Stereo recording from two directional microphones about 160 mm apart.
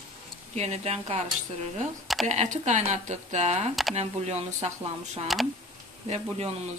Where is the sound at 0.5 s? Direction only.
40° right (ahead or behind).